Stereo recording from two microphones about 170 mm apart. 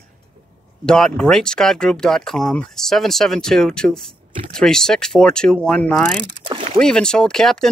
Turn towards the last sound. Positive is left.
turn(degrees=5)  # may be behind; listen again after turning